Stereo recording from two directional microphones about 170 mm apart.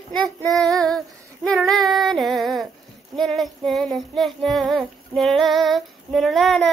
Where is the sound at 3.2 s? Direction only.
Centre (ahead or behind).